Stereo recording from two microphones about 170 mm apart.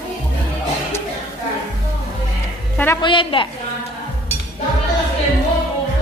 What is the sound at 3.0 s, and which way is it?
Speech, 30° left (ahead or behind).